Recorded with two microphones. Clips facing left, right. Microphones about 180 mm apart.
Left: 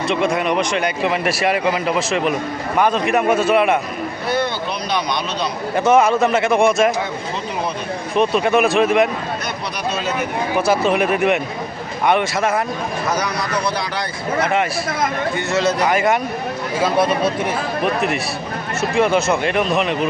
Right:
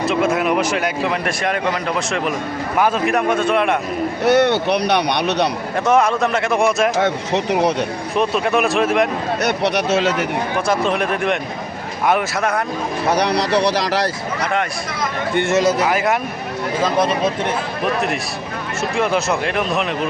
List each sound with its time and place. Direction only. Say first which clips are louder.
0.1 s speech: even; 5° right (ahead or behind)
2.7 s speech: left 1 dB; 5° right (ahead or behind)
4.3 s speech: right 7 dB; 70° right (ahead or behind)
5.7 s speech: left 3 dB; centre (ahead or behind)
7.0 s speech: right 6 dB; 75° right (ahead or behind)
8.1 s speech: left 2 dB; centre (ahead or behind)
9.4 s speech: right 7 dB; 70° right (ahead or behind)
10.5 s speech: left 4 dB; 5° left (ahead or behind)
13.1 s a man's voice: right 7 dB; 35° right (ahead or behind)
13.6 s speech: right 5 dB; 85° right
15.6 s speech: even; centre (ahead or behind)
18.9 s speech: left 3 dB; centre (ahead or behind)